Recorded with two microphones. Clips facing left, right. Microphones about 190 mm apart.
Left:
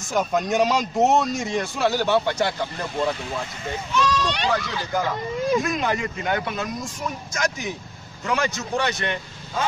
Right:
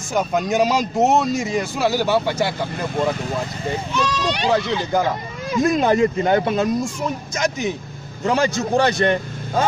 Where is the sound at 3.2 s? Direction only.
30° right (ahead or behind).